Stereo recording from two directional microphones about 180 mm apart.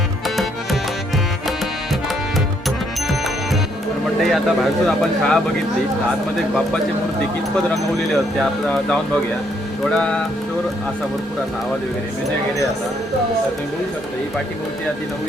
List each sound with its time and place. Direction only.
2.6 s music: centre (ahead or behind)
4.2 s speech: centre (ahead or behind)
7.7 s speech: centre (ahead or behind)